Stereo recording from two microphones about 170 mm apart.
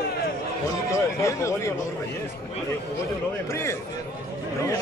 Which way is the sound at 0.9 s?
15° left (ahead or behind).